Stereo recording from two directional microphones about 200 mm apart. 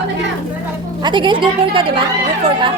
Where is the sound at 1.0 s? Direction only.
25° right (ahead or behind).